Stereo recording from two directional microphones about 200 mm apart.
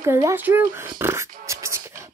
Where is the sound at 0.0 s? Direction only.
15° right (ahead or behind).